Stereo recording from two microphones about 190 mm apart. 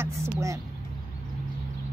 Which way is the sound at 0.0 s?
15° right (ahead or behind).